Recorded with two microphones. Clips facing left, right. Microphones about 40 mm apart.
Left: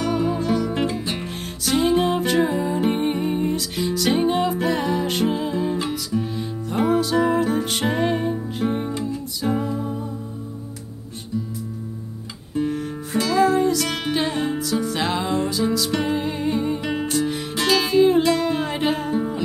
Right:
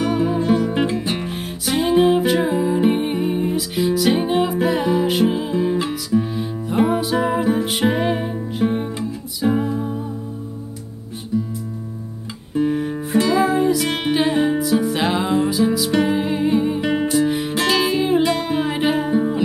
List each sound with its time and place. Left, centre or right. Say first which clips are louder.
0.0 s music: right 3 dB; centre
12.5 s music: right 4 dB; centre